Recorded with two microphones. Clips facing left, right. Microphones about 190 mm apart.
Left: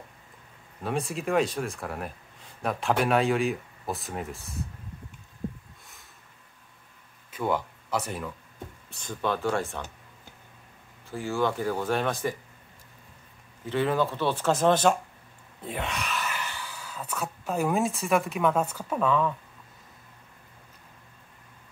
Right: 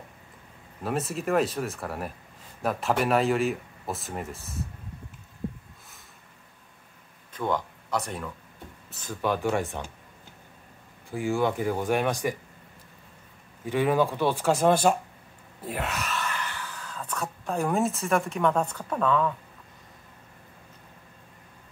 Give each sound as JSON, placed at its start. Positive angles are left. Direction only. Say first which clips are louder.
{"t": 0.8, "sound": "speech", "louder": "right 1 dB", "side_deg": 0}
{"t": 7.3, "sound": "speech", "louder": "even", "side_deg": 5}
{"t": 8.9, "sound": "speech", "louder": "right 1 dB", "side_deg": -10}
{"t": 11.1, "sound": "speech", "louder": "right 2 dB", "side_deg": -15}
{"t": 13.7, "sound": "speech", "louder": "right 2 dB", "side_deg": -15}